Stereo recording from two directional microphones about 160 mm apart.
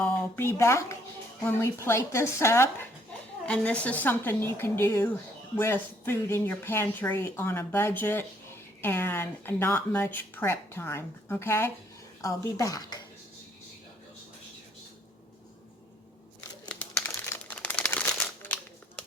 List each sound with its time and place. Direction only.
0.0 s speech: 15° left (ahead or behind)
17.1 s crumpling: 10° left (ahead or behind)